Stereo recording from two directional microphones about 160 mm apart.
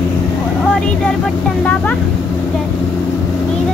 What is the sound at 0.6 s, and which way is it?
Vehicle, 5° left (ahead or behind).